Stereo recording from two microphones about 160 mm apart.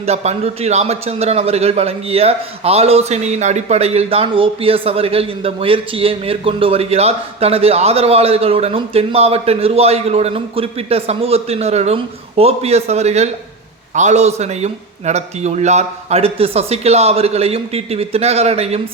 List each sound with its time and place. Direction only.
0.0 s a man's voice: 40° right (ahead or behind)